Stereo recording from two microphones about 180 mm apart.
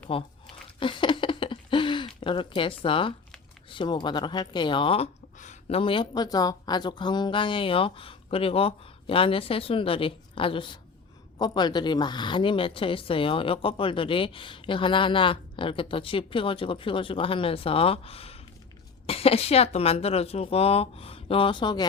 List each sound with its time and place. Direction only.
0.1 s speech: 30° left (ahead or behind)
0.8 s a sound: 30° left (ahead or behind)
3.7 s a woman's voice: 25° left (ahead or behind)